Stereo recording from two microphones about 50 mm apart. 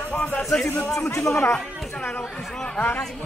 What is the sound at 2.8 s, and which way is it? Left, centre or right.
Speech, left.